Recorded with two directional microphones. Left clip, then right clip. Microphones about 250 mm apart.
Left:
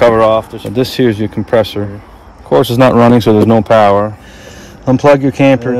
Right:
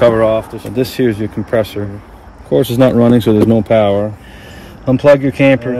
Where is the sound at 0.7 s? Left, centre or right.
Left.